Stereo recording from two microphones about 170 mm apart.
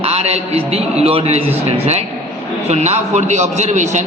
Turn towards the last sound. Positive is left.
turn(degrees=-45)  # may be behind; listen again after turning